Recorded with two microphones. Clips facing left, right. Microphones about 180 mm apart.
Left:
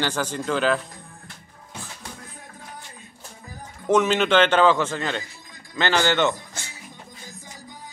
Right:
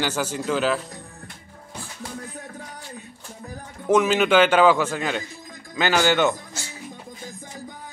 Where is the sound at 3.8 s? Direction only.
5° right (ahead or behind).